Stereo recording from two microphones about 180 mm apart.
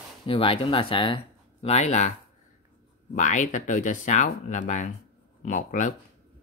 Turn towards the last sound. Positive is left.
turn(degrees=45)  # may be behind; listen again after turning